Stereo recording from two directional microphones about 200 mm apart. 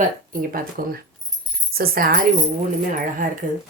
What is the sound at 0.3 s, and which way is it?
Speech, 45° right (ahead or behind).